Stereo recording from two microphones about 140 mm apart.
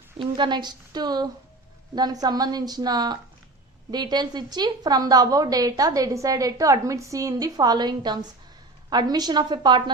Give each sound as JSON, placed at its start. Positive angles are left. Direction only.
{"t": 0.3, "sound": "a woman's voice", "side_deg": -35}